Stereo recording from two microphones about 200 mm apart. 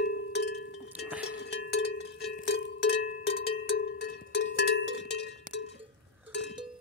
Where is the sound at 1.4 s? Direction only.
70° left (ahead or behind).